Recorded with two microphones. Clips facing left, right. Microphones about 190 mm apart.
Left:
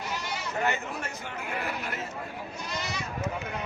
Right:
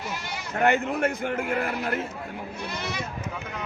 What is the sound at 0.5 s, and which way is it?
A man's voice, 60° right (ahead or behind).